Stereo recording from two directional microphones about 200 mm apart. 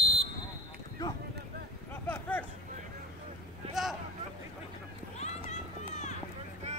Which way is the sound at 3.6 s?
30° right (ahead or behind).